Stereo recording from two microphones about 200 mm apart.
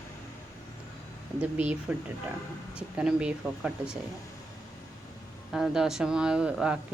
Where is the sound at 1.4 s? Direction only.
5° right (ahead or behind).